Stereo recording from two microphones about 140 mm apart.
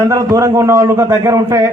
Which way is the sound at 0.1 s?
20° right (ahead or behind).